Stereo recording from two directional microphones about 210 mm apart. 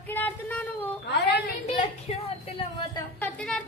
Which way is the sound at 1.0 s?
55° left (ahead or behind).